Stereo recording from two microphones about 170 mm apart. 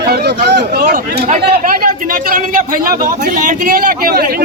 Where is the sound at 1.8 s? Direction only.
55° right (ahead or behind).